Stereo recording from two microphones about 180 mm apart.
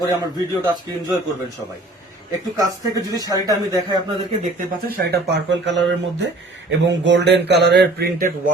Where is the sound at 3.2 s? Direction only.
20° right (ahead or behind).